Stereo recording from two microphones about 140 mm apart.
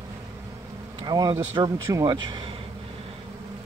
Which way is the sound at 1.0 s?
30° right (ahead or behind).